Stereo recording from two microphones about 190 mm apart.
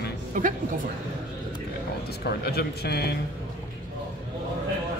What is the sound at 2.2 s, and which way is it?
Speech, 55° left (ahead or behind).